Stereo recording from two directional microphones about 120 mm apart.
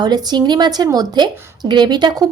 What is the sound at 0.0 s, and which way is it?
A woman's voice, 35° right (ahead or behind).